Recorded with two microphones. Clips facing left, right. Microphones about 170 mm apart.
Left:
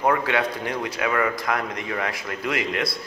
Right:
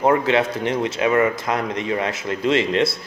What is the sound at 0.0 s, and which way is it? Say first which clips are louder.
A man's voice: right 5 dB; 25° right (ahead or behind).